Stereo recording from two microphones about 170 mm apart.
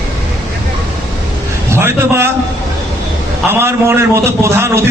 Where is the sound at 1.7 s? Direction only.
15° right (ahead or behind).